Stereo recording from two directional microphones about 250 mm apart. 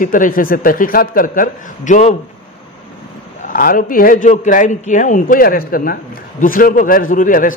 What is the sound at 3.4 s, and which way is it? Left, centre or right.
Speech, left.